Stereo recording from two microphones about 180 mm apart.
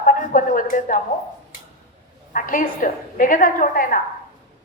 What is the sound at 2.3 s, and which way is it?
A woman's voice, 50° left (ahead or behind).